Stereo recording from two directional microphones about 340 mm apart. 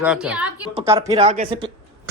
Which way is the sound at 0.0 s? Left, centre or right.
Centre.